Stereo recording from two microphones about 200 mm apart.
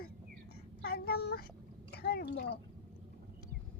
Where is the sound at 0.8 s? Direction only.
50° left (ahead or behind).